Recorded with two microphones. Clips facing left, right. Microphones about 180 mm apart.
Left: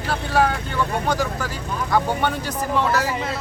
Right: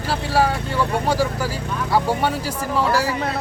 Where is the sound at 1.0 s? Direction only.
10° right (ahead or behind).